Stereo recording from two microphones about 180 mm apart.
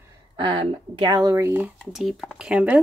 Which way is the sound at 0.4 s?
30° right (ahead or behind).